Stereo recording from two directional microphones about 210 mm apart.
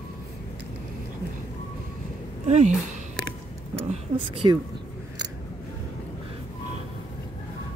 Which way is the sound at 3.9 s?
25° right (ahead or behind).